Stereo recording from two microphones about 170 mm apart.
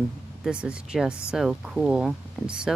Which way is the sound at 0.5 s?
5° right (ahead or behind).